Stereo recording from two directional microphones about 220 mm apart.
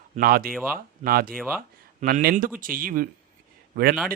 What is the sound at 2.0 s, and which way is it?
Speech, 45° right (ahead or behind).